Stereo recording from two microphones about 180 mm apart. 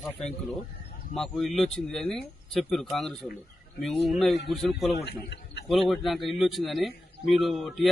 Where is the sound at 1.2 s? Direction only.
Centre (ahead or behind).